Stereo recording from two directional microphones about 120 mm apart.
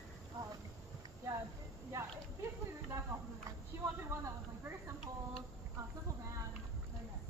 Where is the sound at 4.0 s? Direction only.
20° right (ahead or behind).